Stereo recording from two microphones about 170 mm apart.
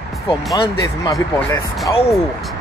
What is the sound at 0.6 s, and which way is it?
Speech, 20° left (ahead or behind).